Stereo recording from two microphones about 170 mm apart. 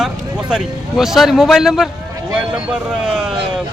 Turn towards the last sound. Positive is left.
turn(degrees=-5)  # may be behind; listen again after turning